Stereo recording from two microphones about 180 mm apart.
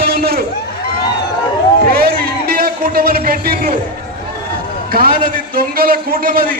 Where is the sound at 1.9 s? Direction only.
60° right (ahead or behind).